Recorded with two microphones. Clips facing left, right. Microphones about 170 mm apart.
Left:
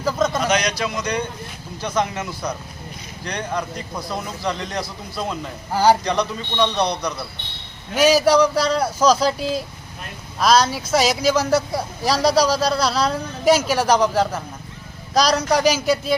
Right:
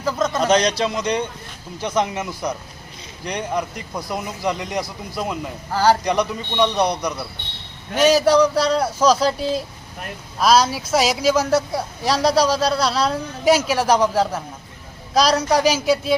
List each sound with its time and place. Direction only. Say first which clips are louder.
0.0 s a man's voice: left 1 dB; centre (ahead or behind)
0.4 s a man's voice: right 4 dB; 35° right (ahead or behind); by 5.4 s 15° right (ahead or behind)
5.7 s a man's voice: left 1 dB; 15° left (ahead or behind)
6.1 s a man's voice: right 1 dB; 15° right (ahead or behind)
7.9 s speech: even; 5° left (ahead or behind)